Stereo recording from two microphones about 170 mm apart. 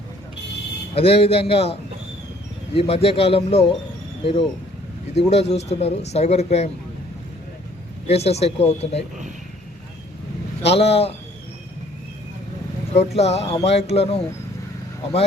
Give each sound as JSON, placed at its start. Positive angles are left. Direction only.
{"t": 0.9, "sound": "speech", "side_deg": 35}
{"t": 8.0, "sound": "speech", "side_deg": 35}
{"t": 10.6, "sound": "speech", "side_deg": 35}
{"t": 12.9, "sound": "speech", "side_deg": 40}